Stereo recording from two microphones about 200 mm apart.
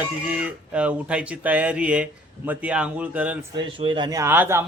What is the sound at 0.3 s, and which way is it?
Speech, 5° right (ahead or behind).